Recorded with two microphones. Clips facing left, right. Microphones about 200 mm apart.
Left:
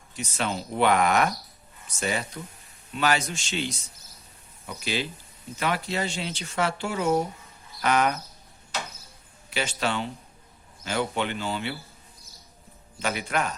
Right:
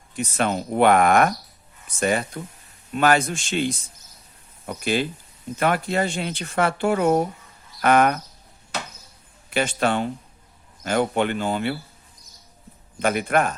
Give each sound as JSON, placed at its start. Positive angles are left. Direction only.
{"t": 0.2, "sound": "speech", "side_deg": -55}
{"t": 9.5, "sound": "speech", "side_deg": -55}
{"t": 13.0, "sound": "speech", "side_deg": -55}